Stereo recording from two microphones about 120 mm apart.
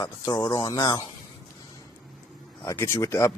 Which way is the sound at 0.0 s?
35° left (ahead or behind).